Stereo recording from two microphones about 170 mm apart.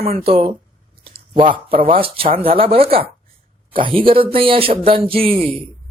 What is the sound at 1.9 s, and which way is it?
Speech, 30° right (ahead or behind).